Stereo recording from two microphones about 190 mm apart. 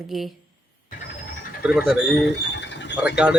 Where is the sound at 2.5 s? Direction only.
70° left (ahead or behind).